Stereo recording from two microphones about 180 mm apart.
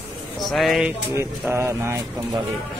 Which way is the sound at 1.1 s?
15° right (ahead or behind).